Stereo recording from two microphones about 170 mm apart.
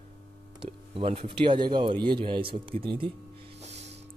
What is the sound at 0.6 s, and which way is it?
Speech, 35° right (ahead or behind).